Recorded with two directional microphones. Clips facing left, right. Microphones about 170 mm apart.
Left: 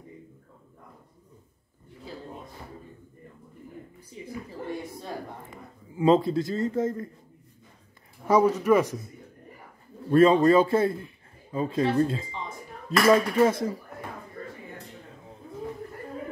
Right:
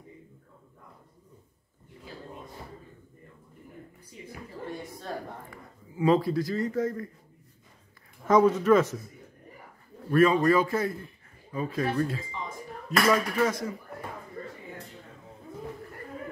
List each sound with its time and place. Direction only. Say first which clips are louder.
5.9 s speech: left 3 dB; 25° left (ahead or behind)
8.3 s a man's voice: even; 10° left (ahead or behind)
10.1 s speech: left 4 dB; 30° left (ahead or behind)